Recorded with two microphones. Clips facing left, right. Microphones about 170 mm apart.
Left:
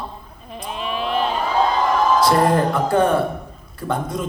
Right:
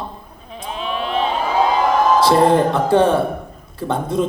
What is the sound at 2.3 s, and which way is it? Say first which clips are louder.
A woman's voice: right 3 dB; 25° right (ahead or behind).